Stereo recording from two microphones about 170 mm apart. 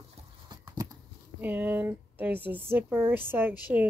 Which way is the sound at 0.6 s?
20° right (ahead or behind).